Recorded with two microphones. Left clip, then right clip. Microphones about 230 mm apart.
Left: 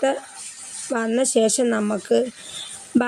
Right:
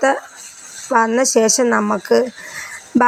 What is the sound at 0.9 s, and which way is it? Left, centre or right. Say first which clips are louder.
A woman's voice: right 7 dB; centre.